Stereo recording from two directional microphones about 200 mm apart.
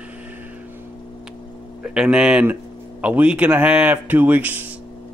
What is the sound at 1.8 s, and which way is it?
Speech, 5° right (ahead or behind).